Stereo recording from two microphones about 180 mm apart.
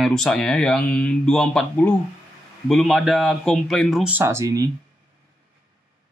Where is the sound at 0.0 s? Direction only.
Centre (ahead or behind); by 4.6 s 15° right (ahead or behind).